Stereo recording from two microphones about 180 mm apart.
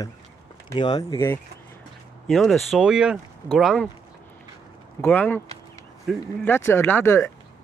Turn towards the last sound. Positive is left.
turn(degrees=15)  # may be behind; listen again after turning